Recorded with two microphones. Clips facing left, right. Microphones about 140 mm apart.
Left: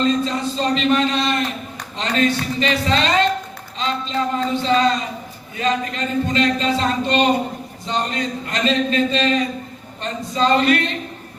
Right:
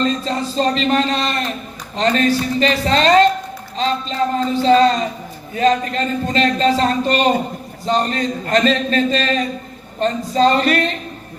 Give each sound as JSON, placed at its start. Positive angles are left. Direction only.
{"t": 0.0, "sound": "speech", "side_deg": -35}